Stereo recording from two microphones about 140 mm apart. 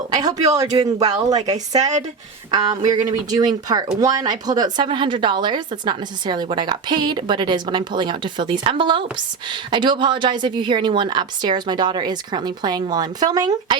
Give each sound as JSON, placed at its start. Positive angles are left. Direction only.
{"t": 0.1, "sound": "speech", "side_deg": -30}
{"t": 1.5, "sound": "a woman's voice", "side_deg": -55}
{"t": 2.5, "sound": "a woman's voice", "side_deg": -30}